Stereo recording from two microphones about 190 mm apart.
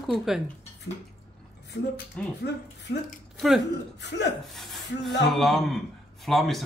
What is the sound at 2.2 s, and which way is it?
Speech, 5° left (ahead or behind).